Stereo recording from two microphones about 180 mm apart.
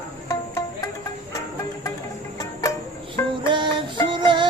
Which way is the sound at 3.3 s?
25° right (ahead or behind).